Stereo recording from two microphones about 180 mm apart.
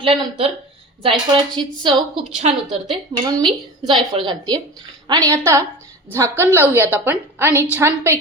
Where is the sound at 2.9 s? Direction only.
20° right (ahead or behind).